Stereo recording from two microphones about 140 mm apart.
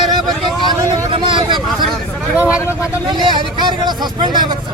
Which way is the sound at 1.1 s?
35° right (ahead or behind).